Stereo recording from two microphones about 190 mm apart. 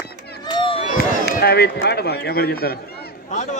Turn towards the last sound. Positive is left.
turn(degrees=40)  # may be behind; listen again after turning